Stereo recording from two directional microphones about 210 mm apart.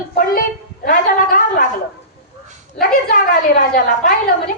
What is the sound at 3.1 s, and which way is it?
A woman's voice, 40° left (ahead or behind).